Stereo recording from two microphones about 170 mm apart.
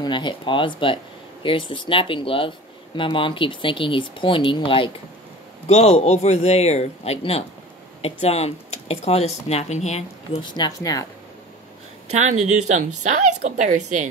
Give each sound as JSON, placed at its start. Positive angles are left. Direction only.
{"t": 0.0, "sound": "a man's voice", "side_deg": 25}
{"t": 10.4, "sound": "speech", "side_deg": 25}
{"t": 12.1, "sound": "a woman's voice", "side_deg": -45}